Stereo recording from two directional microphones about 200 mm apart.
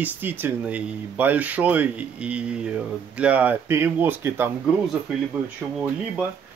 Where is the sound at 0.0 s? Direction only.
10° right (ahead or behind).